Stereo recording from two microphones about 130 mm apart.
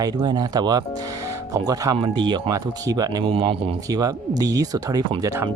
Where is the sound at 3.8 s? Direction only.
30° right (ahead or behind).